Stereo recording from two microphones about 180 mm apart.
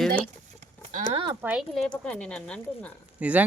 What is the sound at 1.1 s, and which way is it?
Speech, 25° right (ahead or behind).